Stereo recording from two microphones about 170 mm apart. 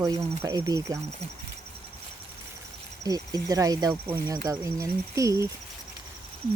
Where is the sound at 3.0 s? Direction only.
20° right (ahead or behind).